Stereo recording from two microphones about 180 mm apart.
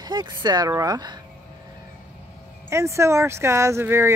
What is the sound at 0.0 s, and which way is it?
Speech, 25° right (ahead or behind).